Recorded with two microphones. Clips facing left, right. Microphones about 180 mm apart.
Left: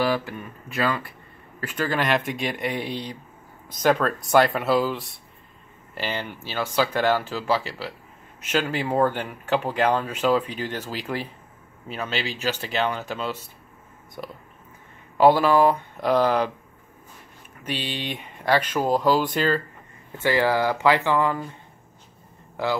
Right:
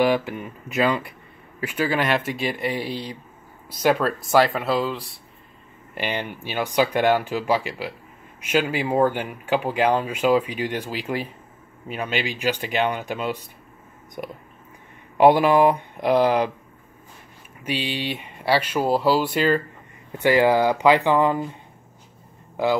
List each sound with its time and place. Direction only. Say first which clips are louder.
0.0 s speech: right 4 dB; 20° right (ahead or behind); by 5.1 s centre (ahead or behind)
5.9 s speech: right 2 dB; 15° right (ahead or behind)
17.6 s speech: right 3 dB; 10° right (ahead or behind)